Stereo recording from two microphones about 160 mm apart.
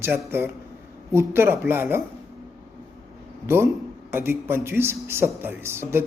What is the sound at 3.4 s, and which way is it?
Speech, 15° right (ahead or behind).